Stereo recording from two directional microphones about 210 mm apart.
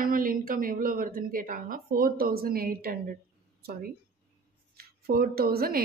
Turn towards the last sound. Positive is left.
turn(degrees=-45)  # may be behind; listen again after turning